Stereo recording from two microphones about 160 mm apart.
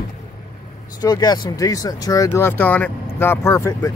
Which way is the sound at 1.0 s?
25° left (ahead or behind).